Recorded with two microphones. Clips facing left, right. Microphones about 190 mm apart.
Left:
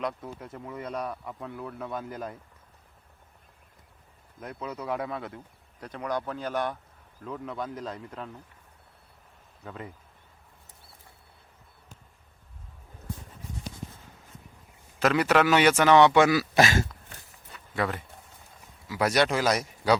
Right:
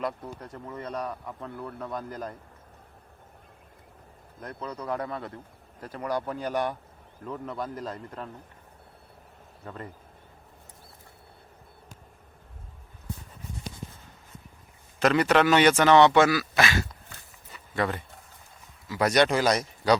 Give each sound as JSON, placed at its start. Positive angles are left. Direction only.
{"t": 0.0, "sound": "a man's voice", "side_deg": 0}
{"t": 4.4, "sound": "a man's voice", "side_deg": 5}
{"t": 7.2, "sound": "a man's voice", "side_deg": 0}
{"t": 9.6, "sound": "a man's voice", "side_deg": 5}
{"t": 14.9, "sound": "speech", "side_deg": 5}
{"t": 16.4, "sound": "speech", "side_deg": 40}
{"t": 17.5, "sound": "a sound", "side_deg": 0}
{"t": 18.9, "sound": "a man's voice", "side_deg": 5}